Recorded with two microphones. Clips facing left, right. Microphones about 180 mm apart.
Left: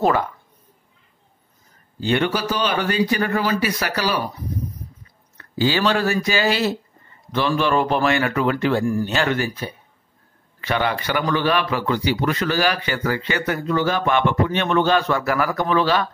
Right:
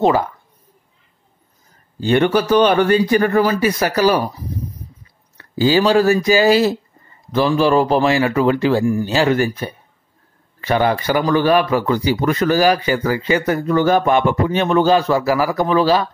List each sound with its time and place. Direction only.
2.0 s a man's voice: 45° right (ahead or behind)
5.4 s speech: 40° right (ahead or behind)
9.4 s a man's voice: 50° right (ahead or behind)
10.6 s speech: 40° right (ahead or behind)